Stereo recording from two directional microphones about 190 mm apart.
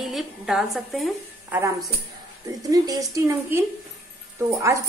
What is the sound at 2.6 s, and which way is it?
A woman's voice, 20° right (ahead or behind).